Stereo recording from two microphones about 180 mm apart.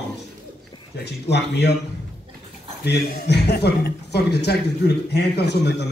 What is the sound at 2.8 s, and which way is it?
A man's voice, 60° left (ahead or behind).